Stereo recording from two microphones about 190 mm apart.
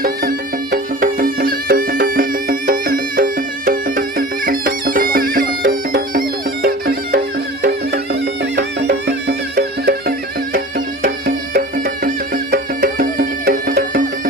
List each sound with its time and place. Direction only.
0.0 s music: 50° right (ahead or behind)
8.5 s music: 60° right (ahead or behind)